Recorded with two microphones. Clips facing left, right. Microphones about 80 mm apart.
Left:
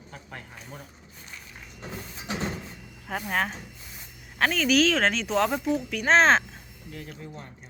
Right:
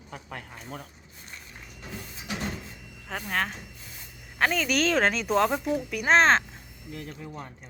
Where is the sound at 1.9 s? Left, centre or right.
Left.